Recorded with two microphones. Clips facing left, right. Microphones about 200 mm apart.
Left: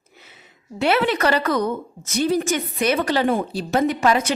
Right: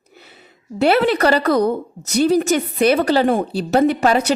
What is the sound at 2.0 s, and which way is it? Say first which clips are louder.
Speech: right 6 dB; 70° right (ahead or behind).